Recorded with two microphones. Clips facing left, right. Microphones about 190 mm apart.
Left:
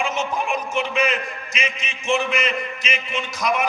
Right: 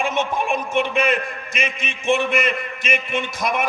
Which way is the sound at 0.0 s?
55° right (ahead or behind).